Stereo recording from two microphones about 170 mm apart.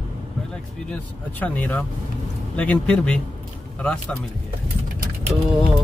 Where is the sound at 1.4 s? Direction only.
10° left (ahead or behind).